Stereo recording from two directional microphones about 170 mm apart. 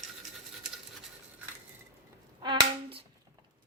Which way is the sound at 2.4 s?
35° right (ahead or behind).